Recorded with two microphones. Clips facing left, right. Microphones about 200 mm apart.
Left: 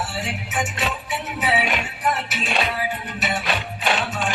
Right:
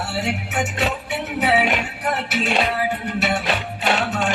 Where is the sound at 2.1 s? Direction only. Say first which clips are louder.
Right 5 dB; 65° right (ahead or behind).